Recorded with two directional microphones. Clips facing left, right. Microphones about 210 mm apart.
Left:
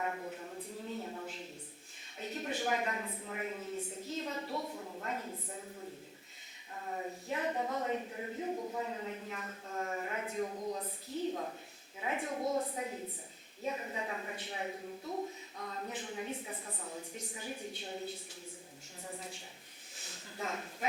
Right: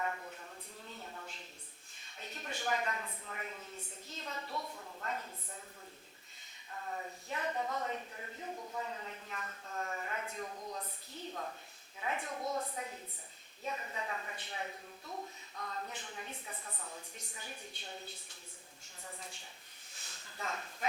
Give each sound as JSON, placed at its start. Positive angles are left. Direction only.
{"t": 0.0, "sound": "a sound", "side_deg": 15}
{"t": 2.2, "sound": "a woman's voice", "side_deg": 5}
{"t": 6.7, "sound": "speech", "side_deg": 15}
{"t": 8.5, "sound": "speech", "side_deg": 25}
{"t": 8.8, "sound": "speech", "side_deg": 10}
{"t": 10.5, "sound": "speech", "side_deg": 25}
{"t": 11.2, "sound": "speech", "side_deg": 10}
{"t": 12.4, "sound": "speech", "side_deg": 25}
{"t": 16.6, "sound": "speech", "side_deg": 20}
{"t": 17.2, "sound": "speech", "side_deg": 5}
{"t": 20.0, "sound": "a sound", "side_deg": 5}